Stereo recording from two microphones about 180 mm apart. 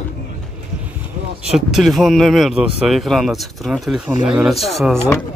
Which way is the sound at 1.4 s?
Centre (ahead or behind).